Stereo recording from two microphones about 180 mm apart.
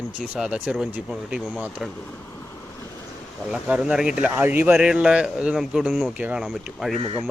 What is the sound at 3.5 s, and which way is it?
Speech, 5° right (ahead or behind).